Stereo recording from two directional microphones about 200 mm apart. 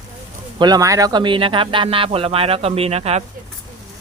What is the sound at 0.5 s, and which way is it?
Speech, 20° right (ahead or behind).